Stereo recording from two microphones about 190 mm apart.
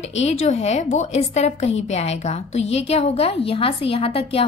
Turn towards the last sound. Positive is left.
turn(degrees=30)  # may be behind; listen again after turning